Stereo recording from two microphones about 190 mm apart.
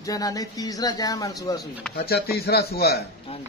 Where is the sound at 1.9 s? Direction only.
55° left (ahead or behind).